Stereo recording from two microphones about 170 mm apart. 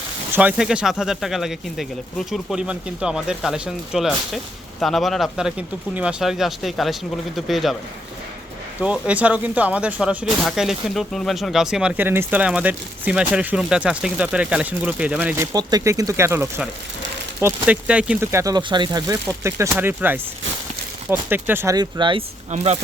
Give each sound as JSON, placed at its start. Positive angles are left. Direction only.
{"t": 0.3, "sound": "speech", "side_deg": -10}
{"t": 8.8, "sound": "speech", "side_deg": -5}
{"t": 15.5, "sound": "speech", "side_deg": -20}
{"t": 22.5, "sound": "speech", "side_deg": -40}